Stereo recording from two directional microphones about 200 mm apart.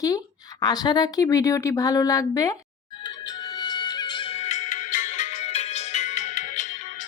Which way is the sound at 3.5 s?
20° left (ahead or behind).